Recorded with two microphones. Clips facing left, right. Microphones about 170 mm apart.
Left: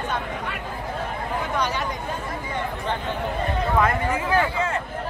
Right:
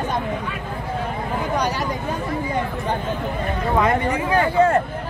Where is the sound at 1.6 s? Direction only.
35° right (ahead or behind).